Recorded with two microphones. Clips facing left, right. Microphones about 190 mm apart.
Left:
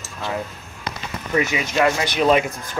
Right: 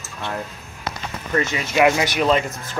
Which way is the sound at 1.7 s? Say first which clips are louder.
Right 3 dB; 15° right (ahead or behind).